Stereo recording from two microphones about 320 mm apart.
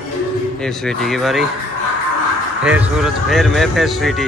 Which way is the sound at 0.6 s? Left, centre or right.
Centre.